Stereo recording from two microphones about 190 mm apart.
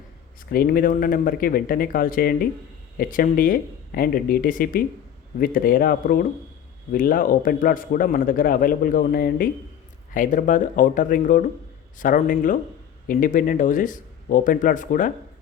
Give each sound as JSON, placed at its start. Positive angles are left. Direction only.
{"t": 0.5, "sound": "a man's voice", "side_deg": 50}